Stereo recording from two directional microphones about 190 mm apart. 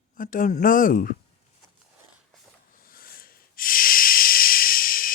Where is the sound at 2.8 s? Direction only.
50° left (ahead or behind).